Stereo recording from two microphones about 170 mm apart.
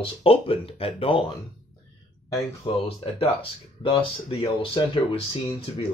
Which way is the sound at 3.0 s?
35° left (ahead or behind).